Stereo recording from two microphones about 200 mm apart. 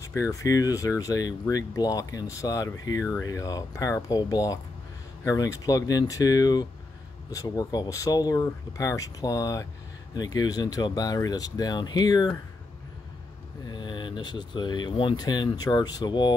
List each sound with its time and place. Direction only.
0.0 s speech: 15° left (ahead or behind)
13.7 s speech: 25° left (ahead or behind)